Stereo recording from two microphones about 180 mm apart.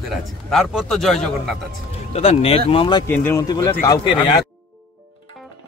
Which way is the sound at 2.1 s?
35° left (ahead or behind).